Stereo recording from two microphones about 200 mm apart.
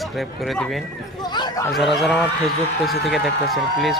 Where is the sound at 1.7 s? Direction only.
Centre (ahead or behind).